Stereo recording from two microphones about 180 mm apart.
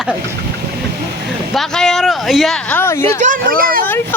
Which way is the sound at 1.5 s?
Centre (ahead or behind).